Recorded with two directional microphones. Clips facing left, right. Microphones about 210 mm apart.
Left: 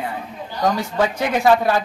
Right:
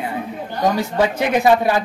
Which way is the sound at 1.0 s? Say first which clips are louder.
Right 2 dB; 20° right (ahead or behind).